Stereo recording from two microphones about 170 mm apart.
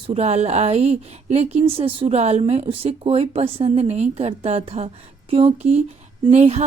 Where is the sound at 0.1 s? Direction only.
40° right (ahead or behind).